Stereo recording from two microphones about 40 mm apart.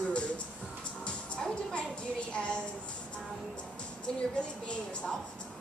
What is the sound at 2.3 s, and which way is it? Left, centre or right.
Speech, left.